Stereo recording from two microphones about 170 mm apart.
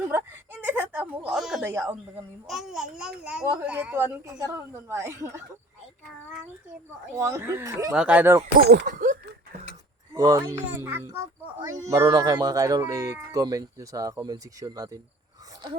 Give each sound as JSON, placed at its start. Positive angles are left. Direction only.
{"t": 0.1, "sound": "speech", "side_deg": -10}
{"t": 2.5, "sound": "a child's voice", "side_deg": 0}
{"t": 7.2, "sound": "a woman's voice", "side_deg": -15}
{"t": 7.9, "sound": "a woman's voice", "side_deg": -5}
{"t": 8.5, "sound": "speech", "side_deg": -60}
{"t": 10.1, "sound": "a woman's voice", "side_deg": -20}